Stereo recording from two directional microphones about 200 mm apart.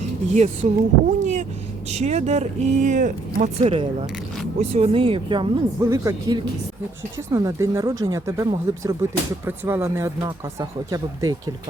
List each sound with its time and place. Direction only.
0.3 s speech: 35° right (ahead or behind)
5.8 s speech: 15° right (ahead or behind)